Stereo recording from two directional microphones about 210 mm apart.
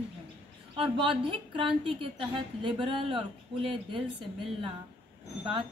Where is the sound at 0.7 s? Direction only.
25° right (ahead or behind).